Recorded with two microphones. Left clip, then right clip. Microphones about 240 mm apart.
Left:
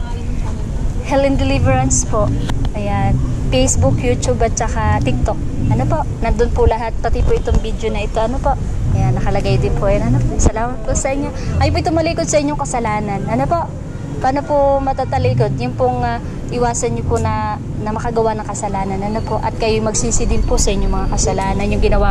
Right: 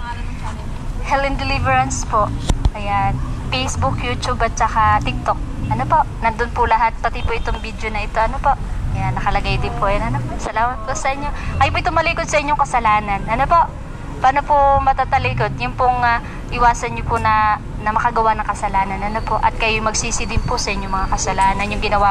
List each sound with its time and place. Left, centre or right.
1.1 s speech: right